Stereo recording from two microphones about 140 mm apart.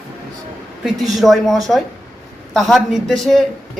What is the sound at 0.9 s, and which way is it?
Speech, centre (ahead or behind).